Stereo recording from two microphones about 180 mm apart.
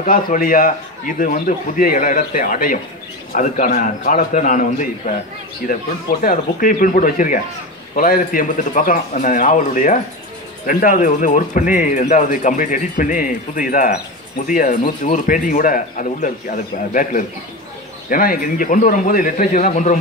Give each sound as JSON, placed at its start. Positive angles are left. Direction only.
{"t": 0.0, "sound": "speech", "side_deg": 50}
{"t": 6.2, "sound": "speech", "side_deg": 50}